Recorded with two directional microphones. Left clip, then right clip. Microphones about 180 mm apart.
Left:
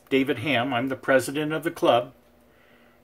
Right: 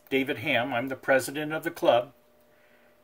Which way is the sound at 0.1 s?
10° right (ahead or behind).